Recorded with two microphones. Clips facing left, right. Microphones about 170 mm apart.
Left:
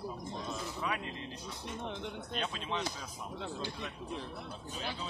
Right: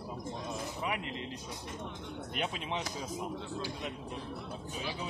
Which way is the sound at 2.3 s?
20° right (ahead or behind).